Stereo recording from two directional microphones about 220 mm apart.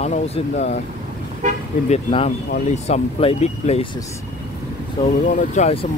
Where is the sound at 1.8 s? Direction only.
30° left (ahead or behind).